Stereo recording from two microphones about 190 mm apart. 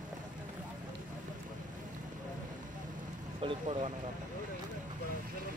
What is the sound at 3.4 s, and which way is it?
Speech, 30° right (ahead or behind).